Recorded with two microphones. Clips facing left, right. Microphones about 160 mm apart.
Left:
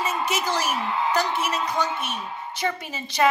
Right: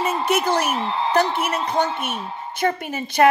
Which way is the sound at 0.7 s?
30° right (ahead or behind).